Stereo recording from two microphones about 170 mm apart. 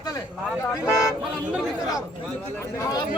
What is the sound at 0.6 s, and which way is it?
Speech, 20° left (ahead or behind).